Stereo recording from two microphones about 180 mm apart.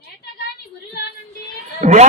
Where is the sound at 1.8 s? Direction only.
40° right (ahead or behind).